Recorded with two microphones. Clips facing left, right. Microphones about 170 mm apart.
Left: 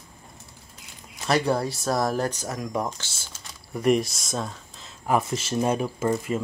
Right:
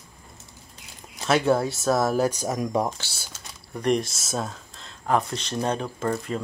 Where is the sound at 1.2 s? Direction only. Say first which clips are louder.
Right 2 dB; centre (ahead or behind); by 3.1 s 20° right (ahead or behind).